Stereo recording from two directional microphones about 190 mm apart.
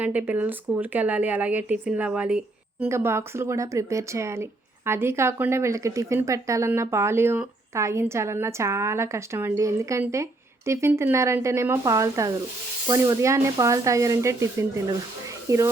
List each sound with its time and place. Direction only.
0.0 s speech: 10° right (ahead or behind)